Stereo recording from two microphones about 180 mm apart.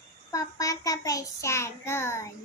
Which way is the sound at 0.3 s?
20° left (ahead or behind).